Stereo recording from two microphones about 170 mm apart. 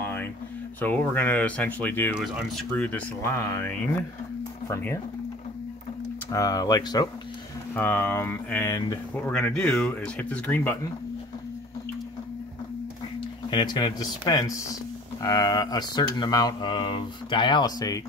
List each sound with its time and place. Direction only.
0.7 s speech: 10° left (ahead or behind)
2.1 s speech: centre (ahead or behind)
2.7 s speech: 10° left (ahead or behind)
6.3 s speech: 20° left (ahead or behind)
7.7 s speech: 10° left (ahead or behind)
9.1 s speech: 5° left (ahead or behind)
13.5 s speech: 25° left (ahead or behind)